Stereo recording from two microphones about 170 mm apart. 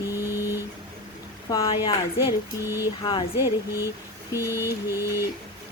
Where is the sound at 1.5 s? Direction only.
25° left (ahead or behind).